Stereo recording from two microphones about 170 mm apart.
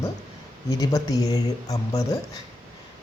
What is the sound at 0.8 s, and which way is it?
Speech, 20° left (ahead or behind).